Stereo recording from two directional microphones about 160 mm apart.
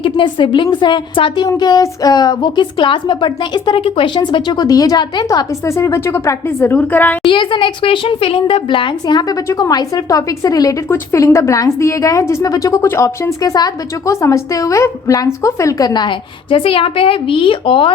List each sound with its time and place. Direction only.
0.0 s a woman's voice: 30° left (ahead or behind); by 7.2 s 10° left (ahead or behind)
7.3 s a woman's voice: 30° left (ahead or behind)